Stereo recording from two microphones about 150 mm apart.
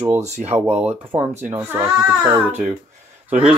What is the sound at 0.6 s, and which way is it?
A child's voice, 10° right (ahead or behind).